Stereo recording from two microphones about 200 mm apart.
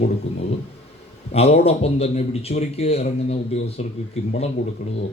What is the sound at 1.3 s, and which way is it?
Speech, 30° left (ahead or behind).